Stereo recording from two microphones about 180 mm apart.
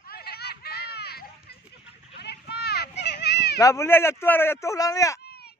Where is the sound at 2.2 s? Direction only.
65° left (ahead or behind).